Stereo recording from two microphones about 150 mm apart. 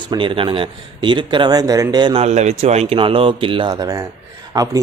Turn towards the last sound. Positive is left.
turn(degrees=-25)  # may be behind; listen again after turning